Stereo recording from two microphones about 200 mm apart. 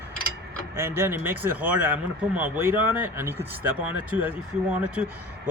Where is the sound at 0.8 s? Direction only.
10° right (ahead or behind).